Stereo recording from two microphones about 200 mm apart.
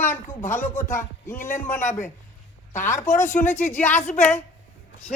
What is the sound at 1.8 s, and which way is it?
A man's voice, 35° left (ahead or behind).